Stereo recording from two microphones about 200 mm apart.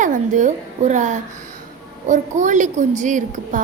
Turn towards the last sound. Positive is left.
turn(degrees=-40)  # may be behind; listen again after turning